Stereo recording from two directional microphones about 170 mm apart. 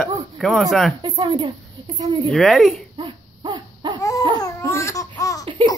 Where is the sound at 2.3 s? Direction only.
Centre (ahead or behind).